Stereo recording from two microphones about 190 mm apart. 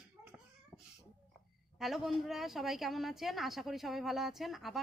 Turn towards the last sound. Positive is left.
turn(degrees=0)  # may be behind; listen again after turning